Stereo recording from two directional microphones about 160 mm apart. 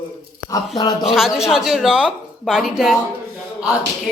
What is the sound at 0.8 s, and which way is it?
Speech, 25° left (ahead or behind).